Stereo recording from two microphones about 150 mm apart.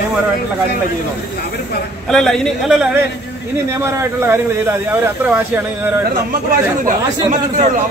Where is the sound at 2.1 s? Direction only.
5° left (ahead or behind).